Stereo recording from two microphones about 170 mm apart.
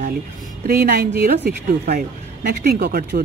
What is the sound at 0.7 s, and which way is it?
Speech, 55° right (ahead or behind).